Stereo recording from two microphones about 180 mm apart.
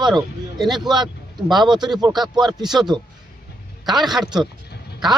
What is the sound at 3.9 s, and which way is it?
Speech, centre (ahead or behind).